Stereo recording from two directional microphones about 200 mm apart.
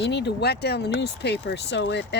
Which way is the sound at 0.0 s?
55° left (ahead or behind).